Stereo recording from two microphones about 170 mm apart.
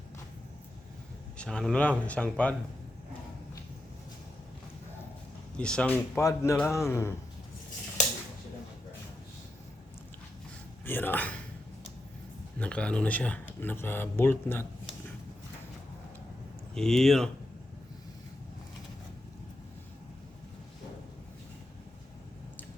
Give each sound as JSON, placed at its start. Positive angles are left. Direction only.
{"t": 1.4, "sound": "speech", "side_deg": 5}
{"t": 5.5, "sound": "speech", "side_deg": 5}
{"t": 10.8, "sound": "speech", "side_deg": 10}
{"t": 12.5, "sound": "speech", "side_deg": 5}
{"t": 16.7, "sound": "speech", "side_deg": 5}